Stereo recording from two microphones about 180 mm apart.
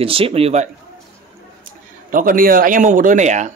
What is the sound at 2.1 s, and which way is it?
Speech, 50° right (ahead or behind).